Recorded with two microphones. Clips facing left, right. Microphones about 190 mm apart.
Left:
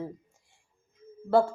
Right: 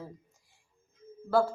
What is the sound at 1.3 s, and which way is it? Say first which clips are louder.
Speech: left 3 dB; 25° left (ahead or behind).